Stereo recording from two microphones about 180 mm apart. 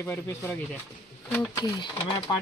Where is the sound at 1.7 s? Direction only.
25° left (ahead or behind).